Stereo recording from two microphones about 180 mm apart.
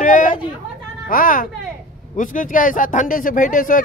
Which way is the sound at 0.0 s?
45° left (ahead or behind).